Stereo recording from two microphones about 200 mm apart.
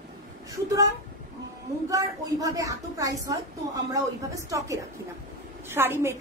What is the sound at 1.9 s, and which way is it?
A woman's voice, 20° right (ahead or behind).